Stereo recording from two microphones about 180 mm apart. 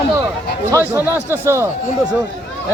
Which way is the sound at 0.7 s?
15° left (ahead or behind).